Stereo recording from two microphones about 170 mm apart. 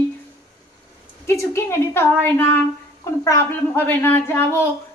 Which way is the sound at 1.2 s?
15° left (ahead or behind).